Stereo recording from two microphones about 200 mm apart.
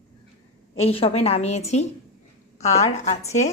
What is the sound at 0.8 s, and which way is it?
Speech, 30° left (ahead or behind).